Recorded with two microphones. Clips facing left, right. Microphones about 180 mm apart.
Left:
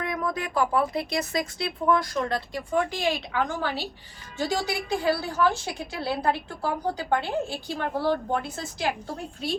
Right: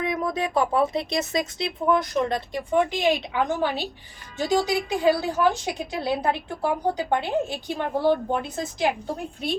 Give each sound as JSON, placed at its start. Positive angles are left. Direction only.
{"t": 0.0, "sound": "a woman's voice", "side_deg": -20}